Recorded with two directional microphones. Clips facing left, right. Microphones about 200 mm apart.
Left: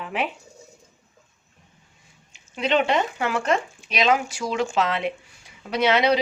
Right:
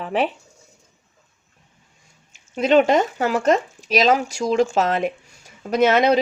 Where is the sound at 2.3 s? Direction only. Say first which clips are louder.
Right 7 dB; 45° right (ahead or behind).